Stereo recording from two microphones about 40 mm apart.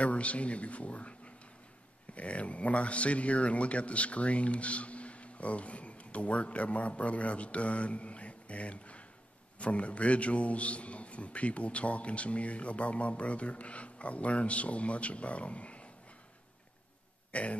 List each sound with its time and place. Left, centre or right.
0.0 s a man's voice: left
17.3 s speech: left